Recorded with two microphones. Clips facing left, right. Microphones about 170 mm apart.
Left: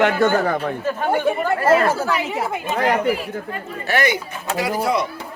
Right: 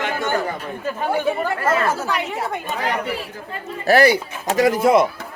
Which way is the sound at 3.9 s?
35° right (ahead or behind).